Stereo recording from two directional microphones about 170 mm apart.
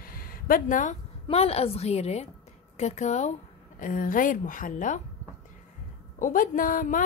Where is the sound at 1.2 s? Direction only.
35° left (ahead or behind).